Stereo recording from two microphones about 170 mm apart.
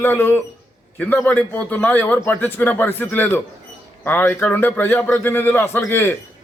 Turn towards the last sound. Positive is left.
turn(degrees=15)  # may be behind; listen again after turning